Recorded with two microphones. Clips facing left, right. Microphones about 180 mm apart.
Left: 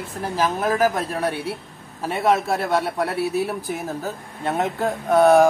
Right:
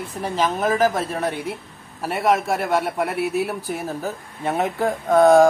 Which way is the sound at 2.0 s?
10° right (ahead or behind).